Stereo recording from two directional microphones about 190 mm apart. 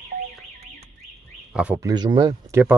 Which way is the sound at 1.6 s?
5° right (ahead or behind).